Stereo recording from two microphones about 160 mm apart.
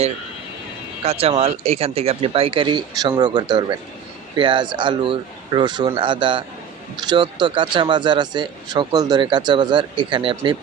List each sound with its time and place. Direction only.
1.0 s speech: 40° right (ahead or behind)